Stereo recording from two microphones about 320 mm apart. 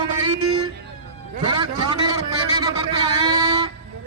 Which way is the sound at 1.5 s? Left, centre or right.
Centre.